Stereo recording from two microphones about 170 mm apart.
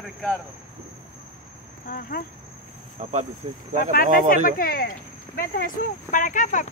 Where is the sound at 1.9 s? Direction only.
60° left (ahead or behind).